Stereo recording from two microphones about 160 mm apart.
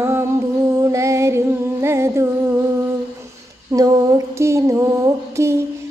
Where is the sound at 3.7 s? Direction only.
20° right (ahead or behind).